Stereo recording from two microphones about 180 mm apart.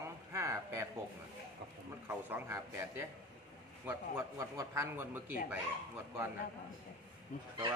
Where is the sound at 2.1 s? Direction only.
10° right (ahead or behind).